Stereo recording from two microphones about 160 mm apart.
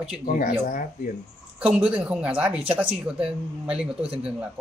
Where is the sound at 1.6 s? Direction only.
10° right (ahead or behind).